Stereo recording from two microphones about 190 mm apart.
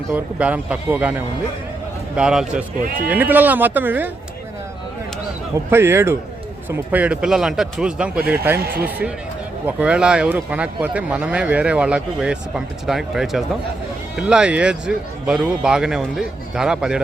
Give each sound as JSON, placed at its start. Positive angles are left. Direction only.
{"t": 0.1, "sound": "speech", "side_deg": -5}
{"t": 5.7, "sound": "speech", "side_deg": -10}
{"t": 8.5, "sound": "speech", "side_deg": -55}
{"t": 9.6, "sound": "speech", "side_deg": -5}